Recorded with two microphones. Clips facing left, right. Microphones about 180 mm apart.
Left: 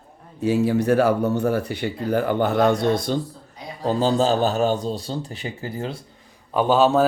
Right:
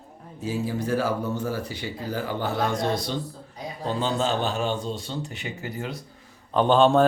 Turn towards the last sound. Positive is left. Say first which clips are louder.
# left 1 dB
turn(degrees=5)  # may be behind; listen again after turning